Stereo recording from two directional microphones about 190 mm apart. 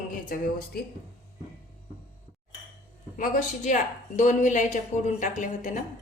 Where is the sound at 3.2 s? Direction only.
40° left (ahead or behind).